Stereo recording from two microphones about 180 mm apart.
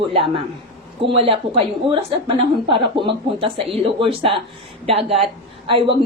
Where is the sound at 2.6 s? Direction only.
30° right (ahead or behind).